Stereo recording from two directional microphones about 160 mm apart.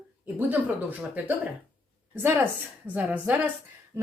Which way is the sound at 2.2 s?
15° right (ahead or behind).